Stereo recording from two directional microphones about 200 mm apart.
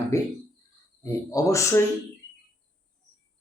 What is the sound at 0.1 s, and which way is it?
Speech, 15° left (ahead or behind).